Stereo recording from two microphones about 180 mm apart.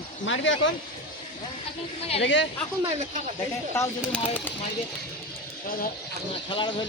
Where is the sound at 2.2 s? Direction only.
90° left.